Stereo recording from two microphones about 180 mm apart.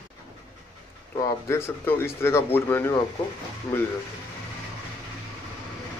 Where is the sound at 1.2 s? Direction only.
15° left (ahead or behind).